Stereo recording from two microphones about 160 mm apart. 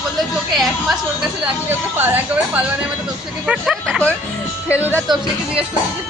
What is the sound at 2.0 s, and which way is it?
Speech, 10° right (ahead or behind).